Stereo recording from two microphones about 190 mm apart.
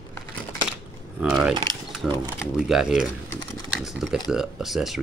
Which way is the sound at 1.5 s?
20° right (ahead or behind).